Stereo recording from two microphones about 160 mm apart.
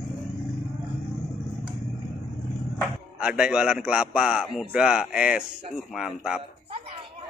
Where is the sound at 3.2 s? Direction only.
5° right (ahead or behind).